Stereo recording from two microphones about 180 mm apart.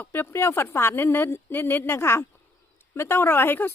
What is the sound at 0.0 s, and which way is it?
Speech, 10° left (ahead or behind).